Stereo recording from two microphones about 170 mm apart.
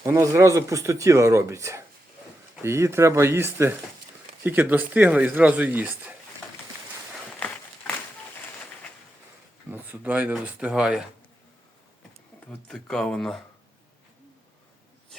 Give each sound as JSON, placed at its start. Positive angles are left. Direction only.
{"t": 0.0, "sound": "speech", "side_deg": -15}
{"t": 7.3, "sound": "a sound", "side_deg": 10}
{"t": 9.6, "sound": "speech", "side_deg": -10}
{"t": 12.4, "sound": "speech", "side_deg": 5}